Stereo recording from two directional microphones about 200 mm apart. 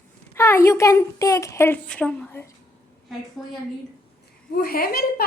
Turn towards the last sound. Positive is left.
turn(degrees=50)  # may be behind; listen again after turning